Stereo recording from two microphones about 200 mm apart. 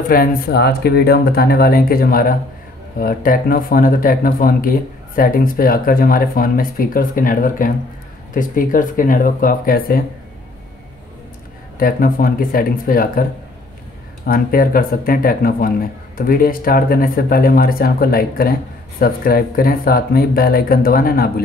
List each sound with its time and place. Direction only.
0.1 s speech: 45° left (ahead or behind)
11.8 s speech: 45° left (ahead or behind)